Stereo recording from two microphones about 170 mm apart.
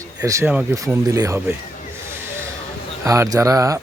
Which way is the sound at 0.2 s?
15° right (ahead or behind).